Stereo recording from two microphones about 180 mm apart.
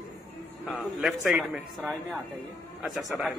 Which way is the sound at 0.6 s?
Centre (ahead or behind).